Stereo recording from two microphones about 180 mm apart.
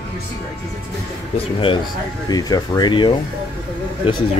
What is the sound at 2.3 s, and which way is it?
Speech, 20° left (ahead or behind).